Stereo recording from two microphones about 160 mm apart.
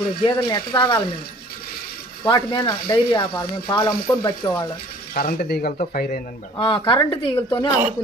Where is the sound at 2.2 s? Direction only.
25° left (ahead or behind).